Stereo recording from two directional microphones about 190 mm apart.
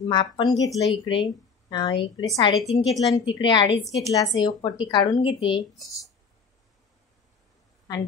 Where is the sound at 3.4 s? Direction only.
25° left (ahead or behind).